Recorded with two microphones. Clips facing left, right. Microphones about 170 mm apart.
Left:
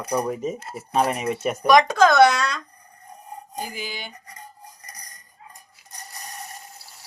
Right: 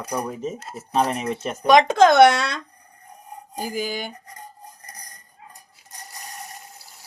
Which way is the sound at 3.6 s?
40° right (ahead or behind).